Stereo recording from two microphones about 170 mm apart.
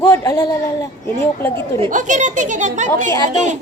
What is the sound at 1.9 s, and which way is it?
Speech, 45° right (ahead or behind).